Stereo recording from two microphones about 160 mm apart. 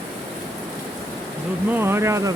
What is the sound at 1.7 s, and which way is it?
Speech, 15° right (ahead or behind).